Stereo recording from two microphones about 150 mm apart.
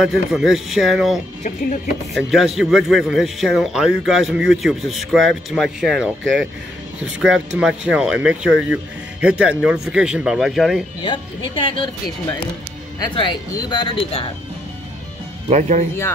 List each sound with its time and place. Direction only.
0.0 s speech: centre (ahead or behind)
11.0 s speech: 35° left (ahead or behind)
15.5 s speech: 50° right (ahead or behind)